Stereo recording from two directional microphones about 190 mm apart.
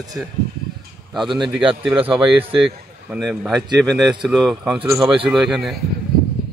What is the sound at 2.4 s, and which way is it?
Speech, 25° right (ahead or behind).